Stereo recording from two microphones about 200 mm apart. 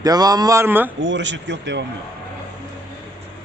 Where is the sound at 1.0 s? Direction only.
65° right (ahead or behind).